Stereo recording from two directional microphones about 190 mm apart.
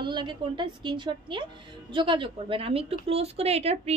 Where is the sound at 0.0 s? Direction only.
25° right (ahead or behind).